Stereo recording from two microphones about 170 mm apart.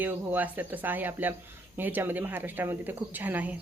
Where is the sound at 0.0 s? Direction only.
10° right (ahead or behind).